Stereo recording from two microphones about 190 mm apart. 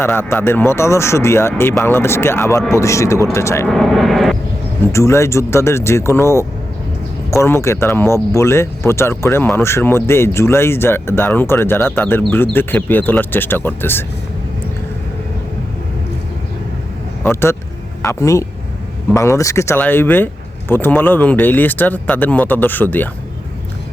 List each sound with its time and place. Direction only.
0.0 s speech: 10° left (ahead or behind)
3.7 s speech: centre (ahead or behind)
4.8 s speech: 15° left (ahead or behind)
17.2 s speech: 15° left (ahead or behind)